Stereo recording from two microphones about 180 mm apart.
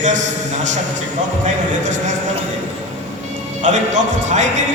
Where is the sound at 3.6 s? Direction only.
40° right (ahead or behind).